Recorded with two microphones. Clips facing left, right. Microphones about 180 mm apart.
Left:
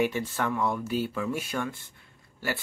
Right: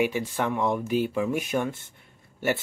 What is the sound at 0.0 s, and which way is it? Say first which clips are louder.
Speech: right 2 dB; 10° right (ahead or behind).